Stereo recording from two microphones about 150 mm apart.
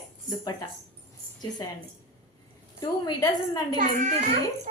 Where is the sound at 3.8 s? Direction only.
60° right (ahead or behind).